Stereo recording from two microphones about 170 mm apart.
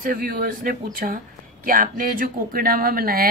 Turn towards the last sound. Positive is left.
turn(degrees=-60)  # may be behind; listen again after turning